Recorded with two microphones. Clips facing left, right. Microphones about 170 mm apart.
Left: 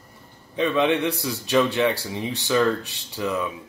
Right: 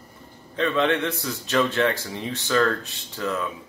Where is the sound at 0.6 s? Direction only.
15° left (ahead or behind).